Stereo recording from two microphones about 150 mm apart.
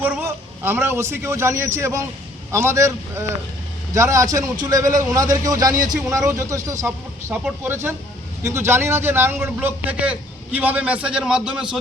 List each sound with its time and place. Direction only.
0.0 s a man's voice: 15° right (ahead or behind)